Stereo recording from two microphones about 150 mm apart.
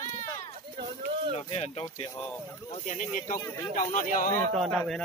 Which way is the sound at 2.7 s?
55° left (ahead or behind).